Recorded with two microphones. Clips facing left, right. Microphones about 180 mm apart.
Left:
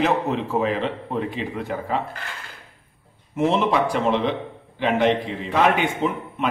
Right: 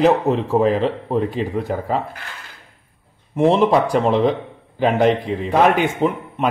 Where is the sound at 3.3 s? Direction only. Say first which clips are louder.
Right 6 dB; 35° right (ahead or behind).